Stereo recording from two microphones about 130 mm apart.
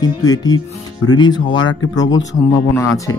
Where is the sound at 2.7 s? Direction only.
25° left (ahead or behind).